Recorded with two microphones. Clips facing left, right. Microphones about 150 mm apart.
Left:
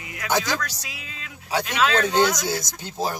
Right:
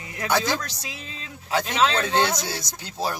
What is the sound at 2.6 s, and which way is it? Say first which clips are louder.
Speech: left 1 dB; 20° left (ahead or behind).